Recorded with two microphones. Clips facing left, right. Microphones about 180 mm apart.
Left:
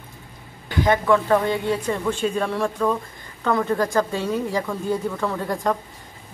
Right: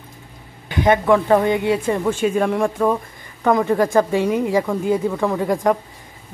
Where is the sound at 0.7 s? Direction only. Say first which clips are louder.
Right 3 dB; 20° right (ahead or behind).